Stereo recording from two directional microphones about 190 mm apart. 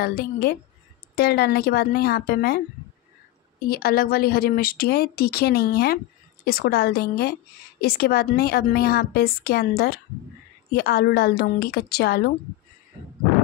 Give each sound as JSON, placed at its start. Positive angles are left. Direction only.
{"t": 0.0, "sound": "a woman's voice", "side_deg": 50}
{"t": 3.6, "sound": "a woman's voice", "side_deg": 50}